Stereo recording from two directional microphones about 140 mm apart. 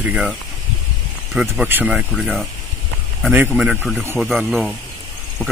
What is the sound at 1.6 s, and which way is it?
Speech, 15° right (ahead or behind).